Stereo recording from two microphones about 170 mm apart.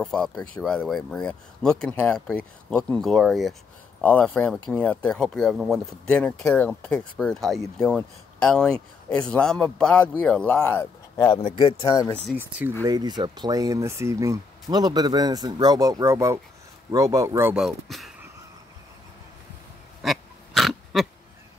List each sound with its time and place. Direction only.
0.0 s speech: 5° left (ahead or behind)
4.0 s speech: 10° left (ahead or behind)
12.4 s speech: 10° right (ahead or behind)
12.8 s speech: 25° right (ahead or behind)
17.6 s speech: centre (ahead or behind)
20.0 s pig: centre (ahead or behind)